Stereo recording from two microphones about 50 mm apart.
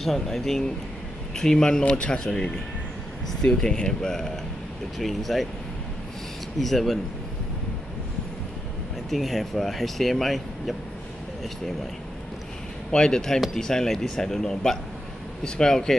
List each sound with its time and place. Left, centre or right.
0.0 s speech: centre
4.9 s speech: centre
6.6 s speech: centre
9.1 s speech: centre
12.9 s speech: centre